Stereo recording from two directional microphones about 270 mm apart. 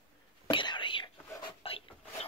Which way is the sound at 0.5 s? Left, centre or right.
Centre.